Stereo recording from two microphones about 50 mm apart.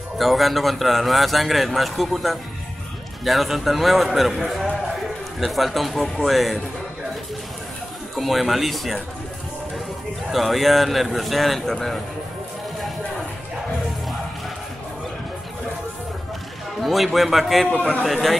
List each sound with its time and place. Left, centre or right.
0.2 s a man's voice: centre
8.2 s a man's voice: centre
10.3 s a man's voice: centre
16.8 s a man's voice: centre
17.7 s a man's voice: left
18.0 s a man's voice: centre